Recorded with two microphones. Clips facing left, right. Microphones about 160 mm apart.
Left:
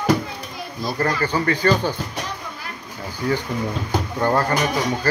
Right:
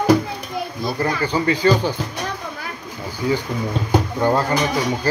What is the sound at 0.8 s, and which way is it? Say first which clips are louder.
Speech: left 1 dB; 15° right (ahead or behind).